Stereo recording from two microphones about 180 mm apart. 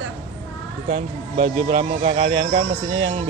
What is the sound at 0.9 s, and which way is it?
Speech, 30° right (ahead or behind).